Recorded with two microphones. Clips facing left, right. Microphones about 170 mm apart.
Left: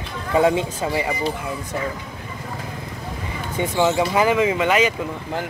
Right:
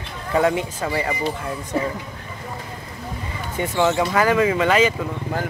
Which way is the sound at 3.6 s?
20° left (ahead or behind).